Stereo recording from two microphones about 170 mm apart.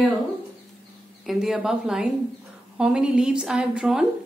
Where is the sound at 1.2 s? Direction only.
Centre (ahead or behind).